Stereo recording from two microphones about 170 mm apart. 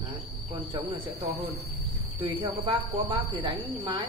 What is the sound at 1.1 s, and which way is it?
Speech, 35° right (ahead or behind).